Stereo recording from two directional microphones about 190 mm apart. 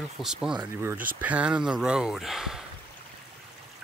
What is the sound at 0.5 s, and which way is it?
Speech, 15° right (ahead or behind).